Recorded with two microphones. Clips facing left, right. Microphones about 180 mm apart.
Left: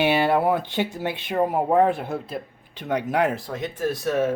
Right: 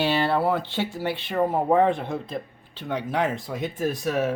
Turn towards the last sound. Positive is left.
turn(degrees=-15)  # may be behind; listen again after turning